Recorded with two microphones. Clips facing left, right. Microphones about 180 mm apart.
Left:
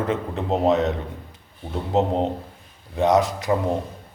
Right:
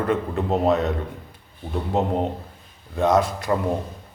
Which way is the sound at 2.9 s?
15° left (ahead or behind).